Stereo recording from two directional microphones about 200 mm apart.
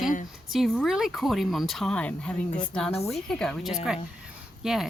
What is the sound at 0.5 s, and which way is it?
Speech, centre (ahead or behind).